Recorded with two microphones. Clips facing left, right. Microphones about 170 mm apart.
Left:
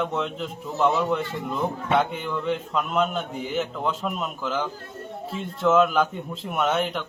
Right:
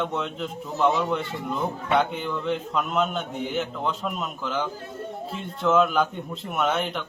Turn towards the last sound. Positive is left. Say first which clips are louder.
# left 1 dB
turn(degrees=0)  # may be behind; listen again after turning